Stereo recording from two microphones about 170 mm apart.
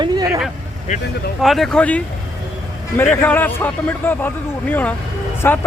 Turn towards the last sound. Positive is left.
turn(degrees=10)  # may be behind; listen again after turning